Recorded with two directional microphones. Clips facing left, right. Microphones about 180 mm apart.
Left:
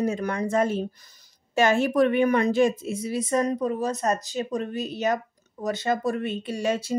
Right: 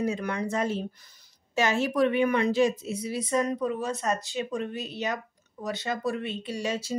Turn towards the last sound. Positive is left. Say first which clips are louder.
# left 4 dB
turn(degrees=55)  # may be behind; listen again after turning